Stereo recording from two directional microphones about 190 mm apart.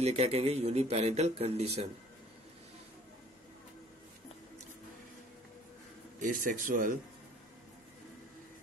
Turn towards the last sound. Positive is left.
turn(degrees=-45)  # may be behind; listen again after turning